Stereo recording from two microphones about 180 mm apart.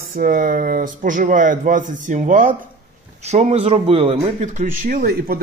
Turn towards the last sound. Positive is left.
turn(degrees=-55)  # may be behind; listen again after turning